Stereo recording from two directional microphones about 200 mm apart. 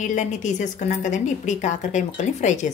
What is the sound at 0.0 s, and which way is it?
A woman's voice, 40° left (ahead or behind).